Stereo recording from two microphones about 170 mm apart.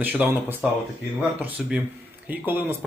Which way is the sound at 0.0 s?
10° right (ahead or behind).